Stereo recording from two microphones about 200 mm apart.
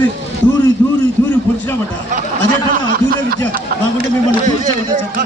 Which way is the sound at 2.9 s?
45° right (ahead or behind).